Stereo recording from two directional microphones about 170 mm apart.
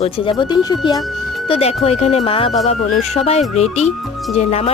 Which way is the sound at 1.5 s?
35° left (ahead or behind).